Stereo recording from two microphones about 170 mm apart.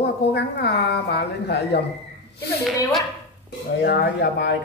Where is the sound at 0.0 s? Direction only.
75° left (ahead or behind).